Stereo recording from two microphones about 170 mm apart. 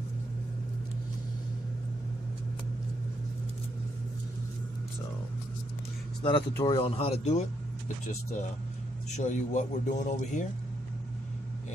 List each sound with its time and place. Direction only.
6.2 s speech: 25° left (ahead or behind)
9.1 s speech: 45° left (ahead or behind)